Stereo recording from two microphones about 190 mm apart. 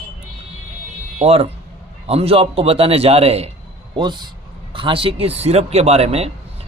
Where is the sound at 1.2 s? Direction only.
30° right (ahead or behind).